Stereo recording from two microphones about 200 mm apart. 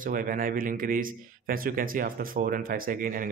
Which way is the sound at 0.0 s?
45° right (ahead or behind).